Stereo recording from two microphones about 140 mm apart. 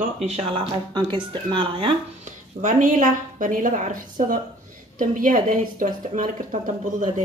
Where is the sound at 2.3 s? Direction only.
65° right (ahead or behind).